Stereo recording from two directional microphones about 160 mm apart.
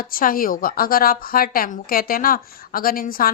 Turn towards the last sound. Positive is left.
turn(degrees=65)  # may be behind; listen again after turning